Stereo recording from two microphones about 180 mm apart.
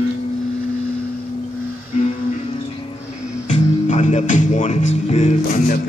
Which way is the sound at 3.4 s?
45° left (ahead or behind).